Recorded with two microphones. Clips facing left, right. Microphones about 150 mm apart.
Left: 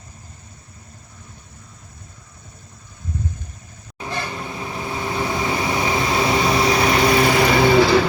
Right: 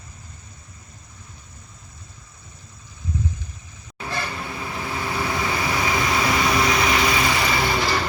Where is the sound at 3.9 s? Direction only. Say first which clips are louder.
Left 2 dB; 15° left (ahead or behind); by 7.9 s 65° left (ahead or behind).